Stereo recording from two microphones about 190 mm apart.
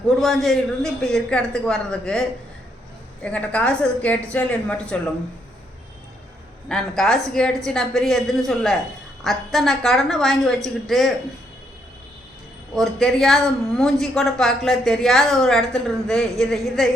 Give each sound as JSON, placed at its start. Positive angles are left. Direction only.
{"t": 0.2, "sound": "a woman's voice", "side_deg": 0}
{"t": 3.2, "sound": "a woman's voice", "side_deg": 5}
{"t": 6.7, "sound": "a woman's voice", "side_deg": 5}
{"t": 12.7, "sound": "a woman's voice", "side_deg": 0}